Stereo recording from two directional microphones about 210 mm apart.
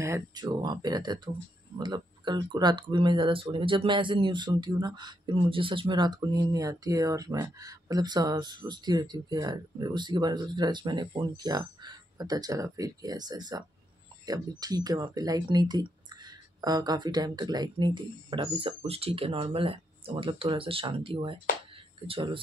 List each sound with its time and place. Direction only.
0.0 s speech: 15° right (ahead or behind)